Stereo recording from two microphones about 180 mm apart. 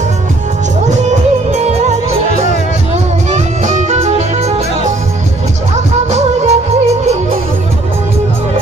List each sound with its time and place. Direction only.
1.5 s music: 40° right (ahead or behind)
3.3 s music: 40° right (ahead or behind)
6.1 s music: 40° right (ahead or behind)